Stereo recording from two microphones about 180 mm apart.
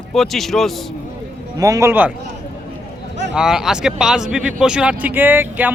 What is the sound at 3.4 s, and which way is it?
Speech, 5° right (ahead or behind).